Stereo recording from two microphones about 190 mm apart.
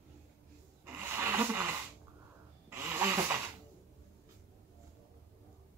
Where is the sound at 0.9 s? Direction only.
10° right (ahead or behind).